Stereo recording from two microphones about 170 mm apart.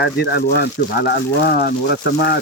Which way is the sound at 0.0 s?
70° left (ahead or behind).